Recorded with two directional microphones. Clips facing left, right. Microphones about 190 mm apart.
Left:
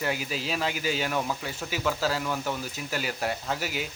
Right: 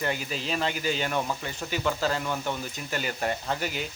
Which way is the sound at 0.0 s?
5° left (ahead or behind).